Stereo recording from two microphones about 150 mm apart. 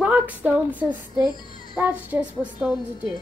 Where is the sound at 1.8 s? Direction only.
10° right (ahead or behind).